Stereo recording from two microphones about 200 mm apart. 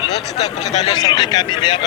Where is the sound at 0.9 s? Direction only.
20° left (ahead or behind).